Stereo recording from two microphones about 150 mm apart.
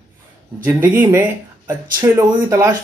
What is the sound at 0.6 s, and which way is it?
Speech, 15° right (ahead or behind).